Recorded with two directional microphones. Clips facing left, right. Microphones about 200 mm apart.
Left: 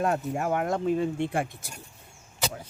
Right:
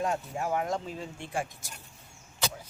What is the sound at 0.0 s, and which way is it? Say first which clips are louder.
Speech: left 4 dB; 60° left (ahead or behind).